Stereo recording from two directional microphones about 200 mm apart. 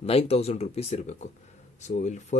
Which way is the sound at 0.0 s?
30° left (ahead or behind).